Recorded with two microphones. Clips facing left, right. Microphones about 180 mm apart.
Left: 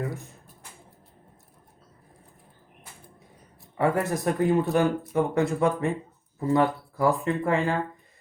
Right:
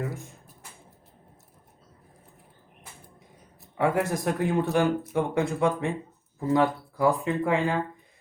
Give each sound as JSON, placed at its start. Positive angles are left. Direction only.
{"t": 3.8, "sound": "speech", "side_deg": 0}